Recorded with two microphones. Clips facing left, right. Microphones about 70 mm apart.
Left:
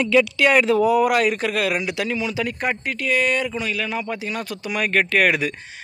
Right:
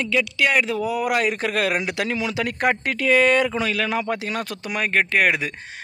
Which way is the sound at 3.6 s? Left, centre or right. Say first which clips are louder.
Right 2 dB; right.